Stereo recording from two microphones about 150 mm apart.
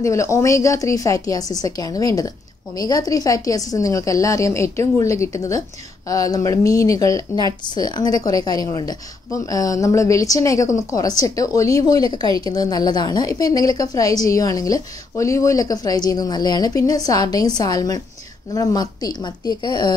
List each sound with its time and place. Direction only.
0.0 s a woman's voice: 20° left (ahead or behind)